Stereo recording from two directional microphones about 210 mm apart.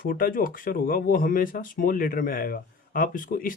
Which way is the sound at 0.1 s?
45° left (ahead or behind).